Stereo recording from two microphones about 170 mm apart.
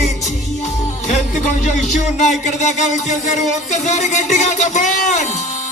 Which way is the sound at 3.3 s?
45° left (ahead or behind).